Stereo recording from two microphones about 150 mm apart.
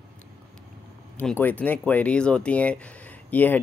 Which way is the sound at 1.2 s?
10° left (ahead or behind).